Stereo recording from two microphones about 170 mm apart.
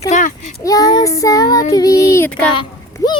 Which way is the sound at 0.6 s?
20° left (ahead or behind).